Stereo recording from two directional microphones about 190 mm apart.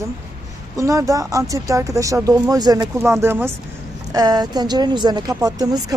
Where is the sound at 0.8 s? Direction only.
15° right (ahead or behind).